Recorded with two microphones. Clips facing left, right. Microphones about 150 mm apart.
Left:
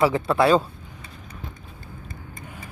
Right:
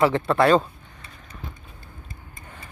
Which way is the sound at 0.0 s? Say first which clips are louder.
Even; 5° left (ahead or behind).